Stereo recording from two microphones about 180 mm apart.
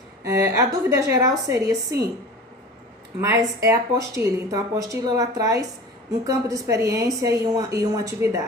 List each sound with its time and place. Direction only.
0.3 s speech: 15° right (ahead or behind)
3.2 s speech: 15° right (ahead or behind)